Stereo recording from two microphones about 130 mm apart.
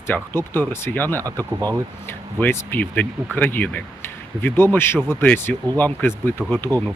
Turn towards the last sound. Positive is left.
turn(degrees=15)  # may be behind; listen again after turning